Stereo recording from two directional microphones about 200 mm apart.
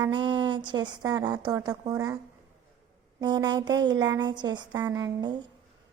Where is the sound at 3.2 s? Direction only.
20° right (ahead or behind).